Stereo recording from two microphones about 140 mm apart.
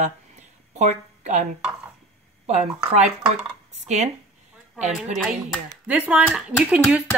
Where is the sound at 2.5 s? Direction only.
50° right (ahead or behind).